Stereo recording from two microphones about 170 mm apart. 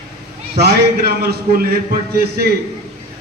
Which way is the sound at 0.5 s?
70° right (ahead or behind).